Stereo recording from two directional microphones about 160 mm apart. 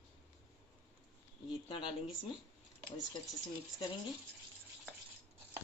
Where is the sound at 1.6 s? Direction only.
35° left (ahead or behind).